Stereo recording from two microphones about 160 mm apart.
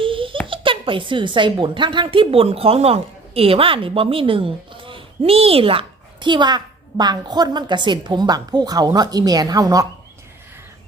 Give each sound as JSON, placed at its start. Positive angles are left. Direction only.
{"t": 0.0, "sound": "giggle", "side_deg": -35}
{"t": 0.4, "sound": "a woman's voice", "side_deg": -30}